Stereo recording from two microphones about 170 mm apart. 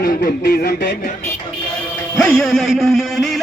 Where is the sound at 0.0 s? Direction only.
65° left (ahead or behind).